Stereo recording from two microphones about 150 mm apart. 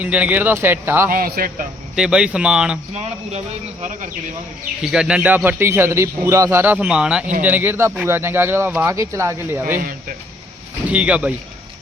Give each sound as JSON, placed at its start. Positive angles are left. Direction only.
{"t": 0.0, "sound": "a man's voice", "side_deg": -10}
{"t": 1.1, "sound": "a man's voice", "side_deg": -70}
{"t": 2.0, "sound": "speech", "side_deg": -5}
{"t": 2.9, "sound": "speech", "side_deg": -45}
{"t": 4.8, "sound": "a man's voice", "side_deg": -5}
{"t": 10.8, "sound": "a man's voice", "side_deg": -10}